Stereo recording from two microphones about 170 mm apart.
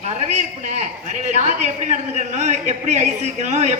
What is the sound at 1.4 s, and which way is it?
A man's voice, 45° right (ahead or behind).